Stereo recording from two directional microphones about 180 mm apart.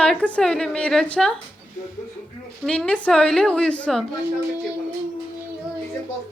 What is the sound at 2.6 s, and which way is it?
A woman's voice, 5° left (ahead or behind).